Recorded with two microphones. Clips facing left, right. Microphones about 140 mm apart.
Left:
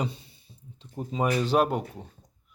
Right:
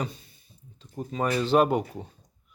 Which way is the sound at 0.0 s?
30° left (ahead or behind).